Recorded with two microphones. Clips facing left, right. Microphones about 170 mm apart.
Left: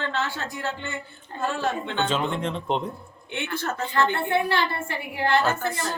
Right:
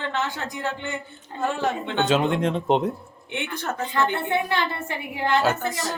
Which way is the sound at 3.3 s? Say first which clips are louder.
Even; 15° right (ahead or behind).